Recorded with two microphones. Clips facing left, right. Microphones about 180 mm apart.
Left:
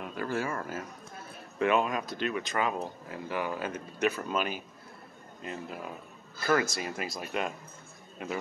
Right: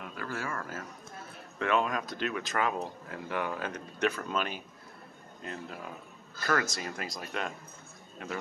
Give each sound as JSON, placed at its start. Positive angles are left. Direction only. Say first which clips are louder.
{"t": 0.0, "sound": "speech", "louder": "left 5 dB", "side_deg": 20}
{"t": 1.6, "sound": "speech", "louder": "left 2 dB", "side_deg": 10}